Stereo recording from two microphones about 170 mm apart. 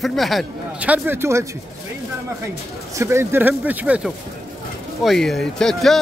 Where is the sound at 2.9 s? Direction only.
15° right (ahead or behind).